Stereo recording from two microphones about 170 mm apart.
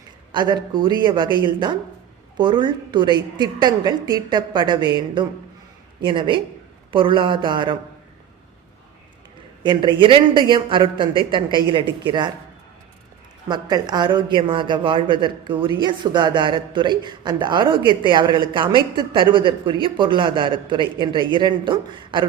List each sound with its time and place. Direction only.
0.3 s a man's voice: 25° right (ahead or behind)
9.6 s a man's voice: 30° right (ahead or behind)
13.5 s a man's voice: 25° right (ahead or behind)